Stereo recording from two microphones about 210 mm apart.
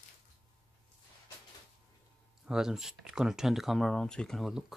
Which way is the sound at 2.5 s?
5° right (ahead or behind).